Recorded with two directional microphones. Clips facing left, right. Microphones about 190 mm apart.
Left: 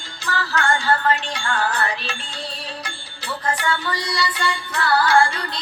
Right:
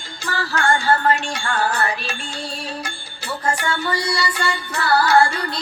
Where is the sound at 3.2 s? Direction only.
45° right (ahead or behind).